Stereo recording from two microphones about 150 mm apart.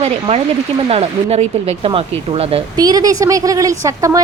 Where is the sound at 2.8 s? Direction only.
25° right (ahead or behind).